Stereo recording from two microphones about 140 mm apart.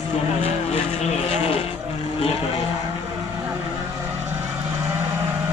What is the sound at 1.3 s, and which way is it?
Speech, 50° left (ahead or behind).